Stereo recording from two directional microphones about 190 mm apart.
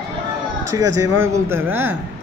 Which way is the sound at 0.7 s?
20° right (ahead or behind).